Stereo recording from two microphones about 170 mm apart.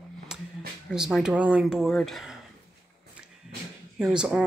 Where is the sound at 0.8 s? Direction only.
Centre (ahead or behind).